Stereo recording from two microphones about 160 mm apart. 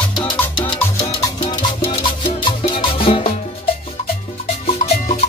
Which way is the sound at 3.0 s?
35° left (ahead or behind).